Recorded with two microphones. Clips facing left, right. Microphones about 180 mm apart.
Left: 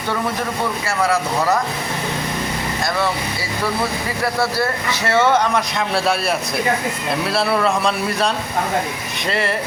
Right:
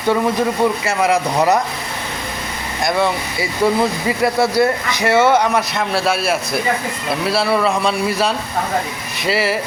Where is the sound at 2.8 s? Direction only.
15° right (ahead or behind).